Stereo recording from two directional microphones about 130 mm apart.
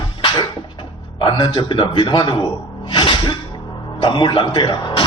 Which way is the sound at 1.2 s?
35° left (ahead or behind).